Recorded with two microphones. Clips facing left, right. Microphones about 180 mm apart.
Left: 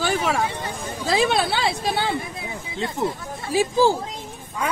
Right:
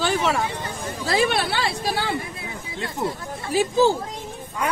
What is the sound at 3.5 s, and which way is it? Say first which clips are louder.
Speech: even; 10° left (ahead or behind).